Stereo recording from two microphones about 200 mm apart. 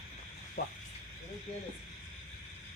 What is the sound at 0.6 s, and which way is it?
Speech, 50° left (ahead or behind).